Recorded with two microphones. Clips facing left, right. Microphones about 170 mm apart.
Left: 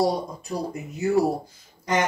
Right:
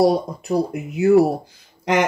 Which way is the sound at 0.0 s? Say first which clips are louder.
Right 6 dB; 65° right (ahead or behind).